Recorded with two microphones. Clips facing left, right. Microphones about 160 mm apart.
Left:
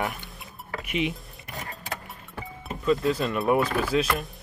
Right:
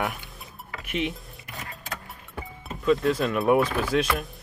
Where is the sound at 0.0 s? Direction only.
Centre (ahead or behind).